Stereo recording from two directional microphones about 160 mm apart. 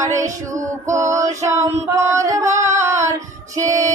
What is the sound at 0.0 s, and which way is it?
Female singing, 20° right (ahead or behind).